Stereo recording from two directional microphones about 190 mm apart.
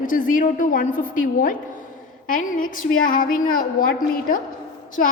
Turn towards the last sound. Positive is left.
turn(degrees=45)  # may be behind; listen again after turning